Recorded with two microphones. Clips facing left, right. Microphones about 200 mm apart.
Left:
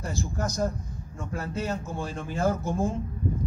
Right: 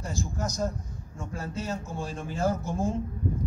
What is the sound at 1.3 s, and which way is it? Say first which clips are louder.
Speech: left 3 dB; 60° left (ahead or behind).